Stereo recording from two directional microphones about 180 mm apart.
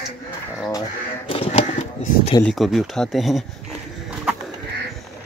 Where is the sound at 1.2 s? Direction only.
30° left (ahead or behind).